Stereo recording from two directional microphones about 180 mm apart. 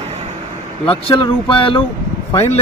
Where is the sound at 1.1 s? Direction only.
30° left (ahead or behind).